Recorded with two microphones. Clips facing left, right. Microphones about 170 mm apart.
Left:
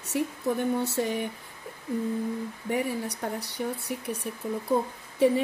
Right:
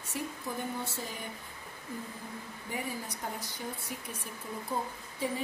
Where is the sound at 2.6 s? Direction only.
70° left (ahead or behind).